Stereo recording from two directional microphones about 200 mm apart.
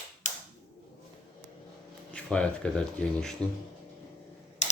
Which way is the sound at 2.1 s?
5° left (ahead or behind).